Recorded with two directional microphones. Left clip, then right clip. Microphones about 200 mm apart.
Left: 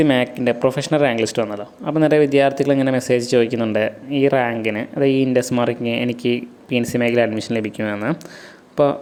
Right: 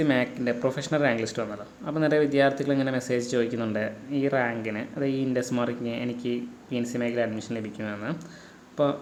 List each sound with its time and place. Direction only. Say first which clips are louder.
0.0 s speech: left 8 dB; 35° left (ahead or behind)